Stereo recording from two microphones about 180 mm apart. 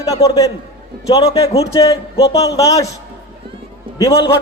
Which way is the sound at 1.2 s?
30° left (ahead or behind).